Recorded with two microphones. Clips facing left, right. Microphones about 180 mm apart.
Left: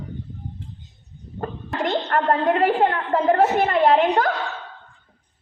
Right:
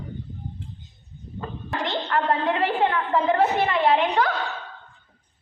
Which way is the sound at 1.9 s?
45° left (ahead or behind).